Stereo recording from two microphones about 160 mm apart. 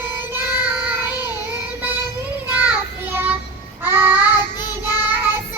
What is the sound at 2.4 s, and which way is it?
Child singing, 10° right (ahead or behind).